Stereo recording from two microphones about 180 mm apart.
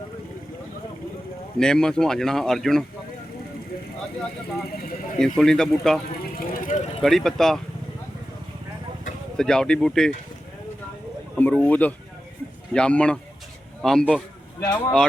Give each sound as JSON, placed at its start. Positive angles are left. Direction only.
{"t": 1.5, "sound": "speech", "side_deg": 5}
{"t": 5.2, "sound": "speech", "side_deg": 5}
{"t": 6.3, "sound": "vehicle", "side_deg": 50}
{"t": 7.0, "sound": "speech", "side_deg": 0}
{"t": 9.4, "sound": "speech", "side_deg": 5}
{"t": 11.3, "sound": "speech", "side_deg": 10}
{"t": 14.6, "sound": "speech", "side_deg": 15}